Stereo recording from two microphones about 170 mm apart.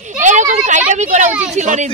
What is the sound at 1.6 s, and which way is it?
Speech, 45° right (ahead or behind).